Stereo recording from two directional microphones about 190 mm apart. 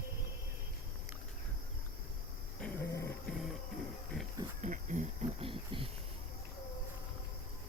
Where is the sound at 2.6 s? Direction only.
10° left (ahead or behind).